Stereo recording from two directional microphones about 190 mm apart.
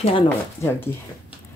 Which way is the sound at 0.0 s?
30° left (ahead or behind).